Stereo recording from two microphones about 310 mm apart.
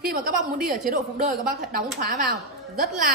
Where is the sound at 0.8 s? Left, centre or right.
Right.